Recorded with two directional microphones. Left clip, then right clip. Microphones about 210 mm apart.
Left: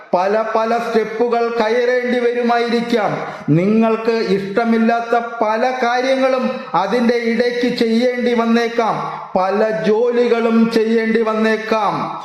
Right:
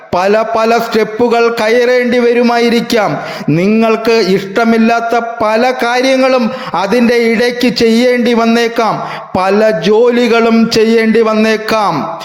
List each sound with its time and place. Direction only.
0.1 s a man's voice: 30° right (ahead or behind)
3.6 s a sound: 30° right (ahead or behind)
9.3 s a man's voice: 30° right (ahead or behind)